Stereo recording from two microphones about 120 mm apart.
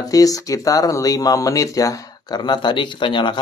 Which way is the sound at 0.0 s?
30° left (ahead or behind).